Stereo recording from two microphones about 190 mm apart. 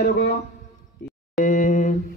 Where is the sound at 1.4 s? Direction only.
45° left (ahead or behind).